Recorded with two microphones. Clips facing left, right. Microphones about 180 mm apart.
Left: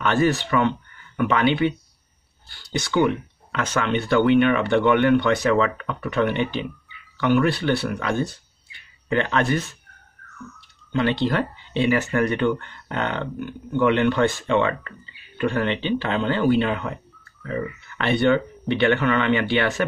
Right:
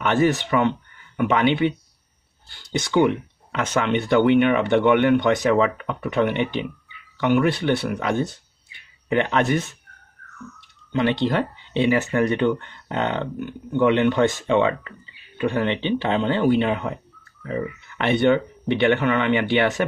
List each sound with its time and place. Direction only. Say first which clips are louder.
0.0 s speech: right 1 dB; 20° right (ahead or behind)
10.9 s speech: right 1 dB; 20° right (ahead or behind)